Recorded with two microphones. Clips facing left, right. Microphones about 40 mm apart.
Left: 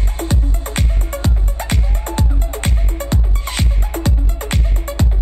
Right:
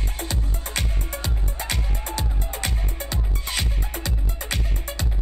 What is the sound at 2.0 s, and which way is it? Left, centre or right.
Music, left.